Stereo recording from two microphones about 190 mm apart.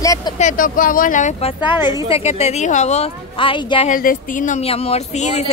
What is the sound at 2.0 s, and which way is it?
Speech, 35° left (ahead or behind).